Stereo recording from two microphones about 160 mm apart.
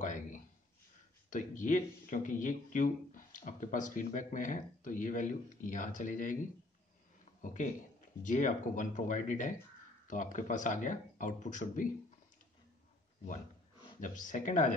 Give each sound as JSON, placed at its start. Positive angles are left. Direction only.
{"t": 0.0, "sound": "a sound", "side_deg": 50}
{"t": 1.3, "sound": "speech", "side_deg": 55}
{"t": 7.4, "sound": "speech", "side_deg": 50}
{"t": 13.9, "sound": "speech", "side_deg": 55}